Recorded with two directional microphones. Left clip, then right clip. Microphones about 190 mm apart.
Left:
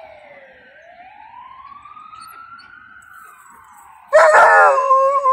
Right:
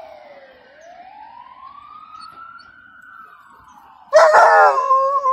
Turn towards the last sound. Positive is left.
turn(degrees=10)  # may be behind; listen again after turning